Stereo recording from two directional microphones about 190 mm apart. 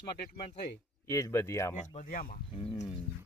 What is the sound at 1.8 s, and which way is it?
Speech, 45° left (ahead or behind).